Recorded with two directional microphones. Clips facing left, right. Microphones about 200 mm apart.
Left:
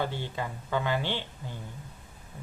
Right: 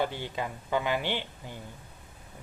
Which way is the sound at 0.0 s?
15° right (ahead or behind).